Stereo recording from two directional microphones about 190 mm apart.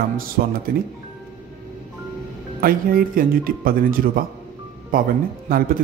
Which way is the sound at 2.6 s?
50° right (ahead or behind).